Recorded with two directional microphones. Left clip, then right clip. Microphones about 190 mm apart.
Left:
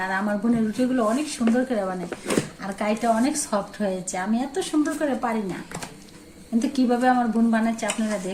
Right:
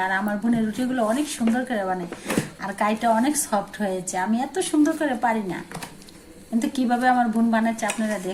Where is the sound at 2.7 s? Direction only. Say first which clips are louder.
Right 2 dB; 30° right (ahead or behind).